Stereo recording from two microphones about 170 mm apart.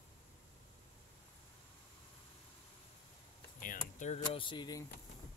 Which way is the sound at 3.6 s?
50° left (ahead or behind).